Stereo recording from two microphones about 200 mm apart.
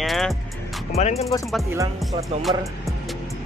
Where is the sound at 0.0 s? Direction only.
Centre (ahead or behind).